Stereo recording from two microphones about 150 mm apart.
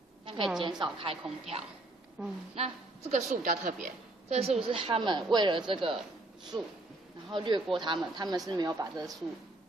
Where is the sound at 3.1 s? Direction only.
60° right (ahead or behind); by 9.1 s 25° right (ahead or behind).